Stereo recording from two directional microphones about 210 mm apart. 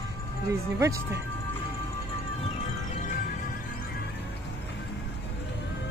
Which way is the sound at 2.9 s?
35° left (ahead or behind).